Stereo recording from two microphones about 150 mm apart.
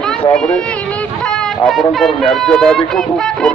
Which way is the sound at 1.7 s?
Centre (ahead or behind).